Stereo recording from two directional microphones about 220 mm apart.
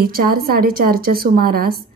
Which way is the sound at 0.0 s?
40° right (ahead or behind).